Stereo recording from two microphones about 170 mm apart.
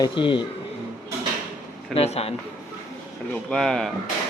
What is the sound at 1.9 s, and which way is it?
Speech, 35° left (ahead or behind).